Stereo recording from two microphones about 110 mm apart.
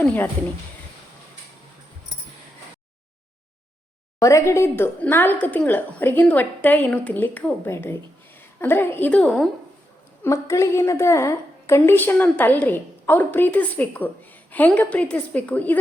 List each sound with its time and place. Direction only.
0.0 s a woman's voice: 15° left (ahead or behind)
4.2 s a woman's voice: 30° left (ahead or behind); by 9.5 s 5° left (ahead or behind)
10.2 s a woman's voice: 30° left (ahead or behind)